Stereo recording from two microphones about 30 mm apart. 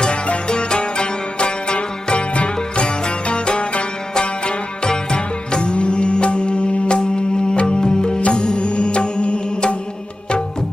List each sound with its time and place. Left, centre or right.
0.5 s music: left